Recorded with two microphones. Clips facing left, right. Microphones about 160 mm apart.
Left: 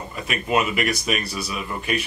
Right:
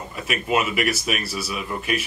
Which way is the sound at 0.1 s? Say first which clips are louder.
Even; 5° right (ahead or behind).